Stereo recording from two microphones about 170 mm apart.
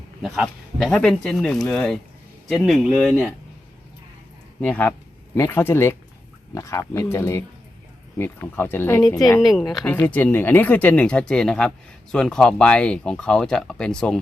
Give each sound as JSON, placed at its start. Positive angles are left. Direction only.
{"t": 0.2, "sound": "speech", "side_deg": 0}
{"t": 4.6, "sound": "speech", "side_deg": 10}
{"t": 9.4, "sound": "speech", "side_deg": 0}
{"t": 9.8, "sound": "speech", "side_deg": 10}